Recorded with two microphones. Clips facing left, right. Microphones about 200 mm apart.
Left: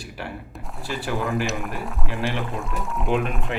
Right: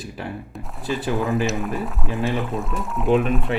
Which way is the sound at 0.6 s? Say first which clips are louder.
Right 5 dB; centre (ahead or behind).